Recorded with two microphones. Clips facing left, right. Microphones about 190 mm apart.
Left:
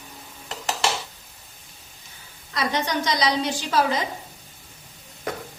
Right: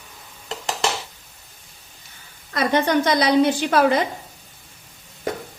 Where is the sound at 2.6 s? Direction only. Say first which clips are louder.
Right 6 dB; 55° right (ahead or behind).